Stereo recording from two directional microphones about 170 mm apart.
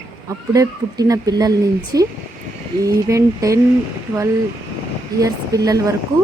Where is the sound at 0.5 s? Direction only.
20° right (ahead or behind).